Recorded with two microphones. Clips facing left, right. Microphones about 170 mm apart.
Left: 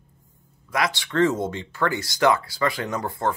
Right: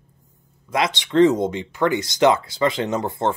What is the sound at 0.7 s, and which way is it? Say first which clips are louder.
Speech: right 4 dB; 20° right (ahead or behind).